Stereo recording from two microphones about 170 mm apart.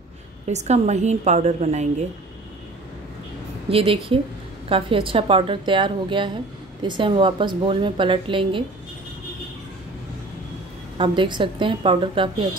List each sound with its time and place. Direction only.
0.5 s a woman's voice: 40° right (ahead or behind)
3.6 s a woman's voice: 35° right (ahead or behind)
11.0 s a woman's voice: 30° right (ahead or behind)